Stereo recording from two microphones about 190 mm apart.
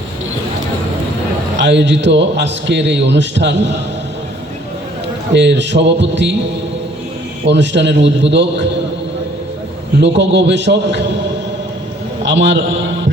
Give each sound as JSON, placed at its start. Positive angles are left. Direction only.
{"t": 1.5, "sound": "a man's voice", "side_deg": -70}
{"t": 5.3, "sound": "a man's voice", "side_deg": -65}
{"t": 7.4, "sound": "a man's voice", "side_deg": -65}
{"t": 10.0, "sound": "a man's voice", "side_deg": -70}
{"t": 12.2, "sound": "a man's voice", "side_deg": -75}